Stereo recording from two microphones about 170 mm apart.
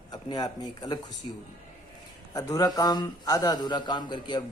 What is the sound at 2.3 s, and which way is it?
A man's voice, 20° left (ahead or behind).